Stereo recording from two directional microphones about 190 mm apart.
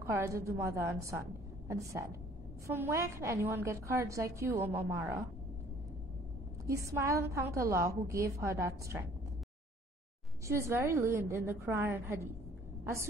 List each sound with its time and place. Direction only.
0.0 s a woman's voice: 15° right (ahead or behind)
6.7 s a woman's voice: 15° right (ahead or behind)
10.4 s a woman's voice: 15° right (ahead or behind)